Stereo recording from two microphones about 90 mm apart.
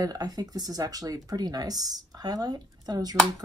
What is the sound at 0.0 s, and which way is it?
Speech, 45° right (ahead or behind).